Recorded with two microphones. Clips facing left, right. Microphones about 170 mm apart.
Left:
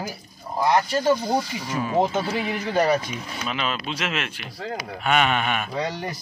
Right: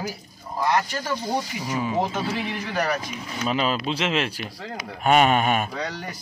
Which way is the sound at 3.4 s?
35° right (ahead or behind).